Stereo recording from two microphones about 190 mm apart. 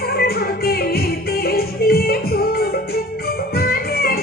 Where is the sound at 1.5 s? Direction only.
55° left (ahead or behind).